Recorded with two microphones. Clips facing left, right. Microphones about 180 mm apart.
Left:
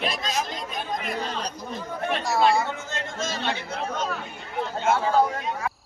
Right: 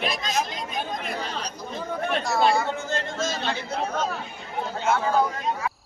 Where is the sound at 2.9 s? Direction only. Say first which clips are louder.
Right 3 dB; 35° right (ahead or behind).